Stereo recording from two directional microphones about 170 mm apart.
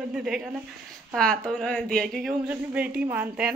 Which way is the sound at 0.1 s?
5° right (ahead or behind).